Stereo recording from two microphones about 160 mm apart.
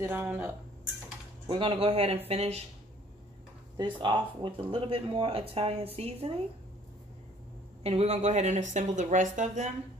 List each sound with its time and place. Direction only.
0.0 s speech: 15° right (ahead or behind)
1.5 s speech: 35° right (ahead or behind)
3.7 s speech: 30° right (ahead or behind)
7.8 s speech: 40° right (ahead or behind)